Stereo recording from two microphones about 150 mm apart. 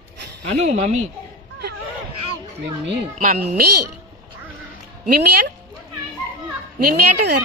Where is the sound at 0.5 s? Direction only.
50° right (ahead or behind).